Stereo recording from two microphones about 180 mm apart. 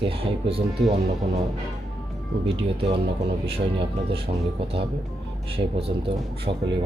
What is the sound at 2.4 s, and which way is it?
Speech, 30° right (ahead or behind).